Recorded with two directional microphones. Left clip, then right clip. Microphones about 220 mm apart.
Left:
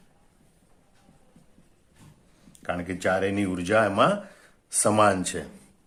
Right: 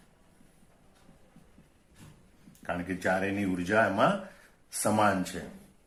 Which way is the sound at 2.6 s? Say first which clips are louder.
Left 4 dB; 45° left (ahead or behind).